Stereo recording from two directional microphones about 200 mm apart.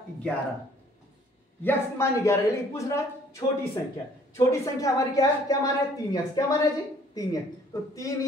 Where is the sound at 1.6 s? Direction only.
15° left (ahead or behind).